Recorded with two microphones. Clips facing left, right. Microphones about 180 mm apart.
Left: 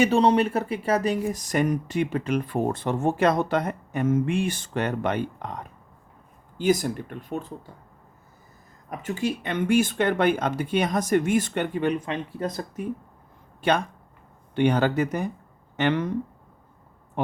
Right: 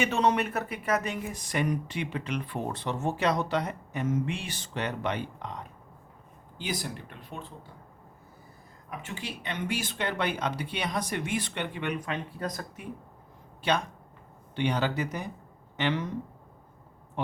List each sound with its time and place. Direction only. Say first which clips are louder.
0.0 s speech: left 7 dB; 30° left (ahead or behind)
8.9 s speech: left 11 dB; 40° left (ahead or behind)
13.6 s speech: left 5 dB; 55° left (ahead or behind)
17.2 s a sound: left 6 dB; 50° left (ahead or behind)